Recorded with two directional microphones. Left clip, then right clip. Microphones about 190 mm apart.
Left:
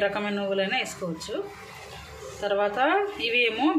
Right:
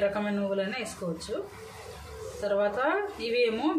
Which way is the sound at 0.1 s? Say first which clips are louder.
Left 2 dB; 10° left (ahead or behind).